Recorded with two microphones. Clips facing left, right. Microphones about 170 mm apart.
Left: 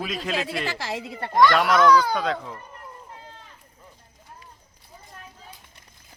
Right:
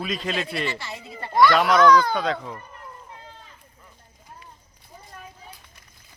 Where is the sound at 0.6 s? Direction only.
90° left; by 1.3 s 75° left (ahead or behind).